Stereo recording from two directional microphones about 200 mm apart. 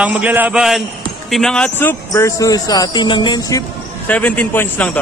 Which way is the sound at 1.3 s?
5° left (ahead or behind).